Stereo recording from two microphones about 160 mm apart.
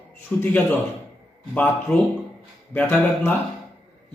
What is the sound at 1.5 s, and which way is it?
Speech, 10° left (ahead or behind).